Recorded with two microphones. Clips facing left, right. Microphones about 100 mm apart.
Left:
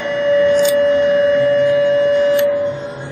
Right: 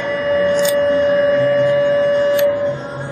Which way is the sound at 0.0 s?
35° right (ahead or behind).